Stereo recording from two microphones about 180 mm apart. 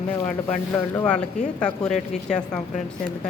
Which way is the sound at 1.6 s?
5° left (ahead or behind).